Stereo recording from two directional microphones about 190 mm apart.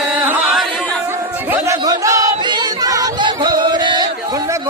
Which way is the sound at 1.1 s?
10° right (ahead or behind).